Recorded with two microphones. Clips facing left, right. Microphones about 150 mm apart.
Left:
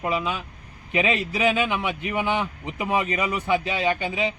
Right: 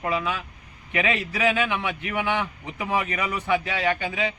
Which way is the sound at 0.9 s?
25° left (ahead or behind).